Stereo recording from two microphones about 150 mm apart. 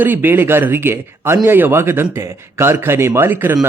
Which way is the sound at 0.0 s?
15° right (ahead or behind).